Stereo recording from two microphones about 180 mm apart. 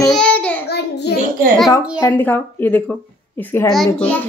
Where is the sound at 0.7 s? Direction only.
65° left (ahead or behind).